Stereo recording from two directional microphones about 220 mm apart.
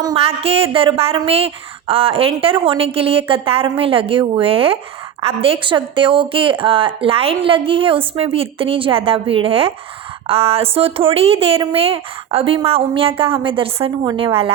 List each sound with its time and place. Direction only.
0.0 s a woman's voice: 20° right (ahead or behind)